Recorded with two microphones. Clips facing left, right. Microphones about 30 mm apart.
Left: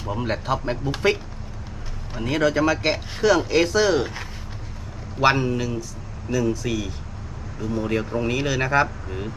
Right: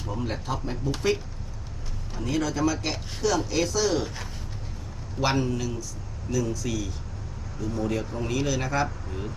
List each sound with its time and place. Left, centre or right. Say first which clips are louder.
0.1 s speech: left 6 dB; left
2.1 s a man's voice: left 6 dB; left